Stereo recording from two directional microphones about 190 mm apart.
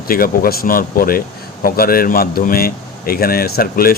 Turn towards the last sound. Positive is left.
turn(degrees=50)  # may be behind; listen again after turning